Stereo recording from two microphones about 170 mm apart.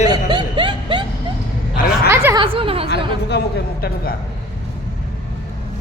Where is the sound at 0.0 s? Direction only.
25° right (ahead or behind).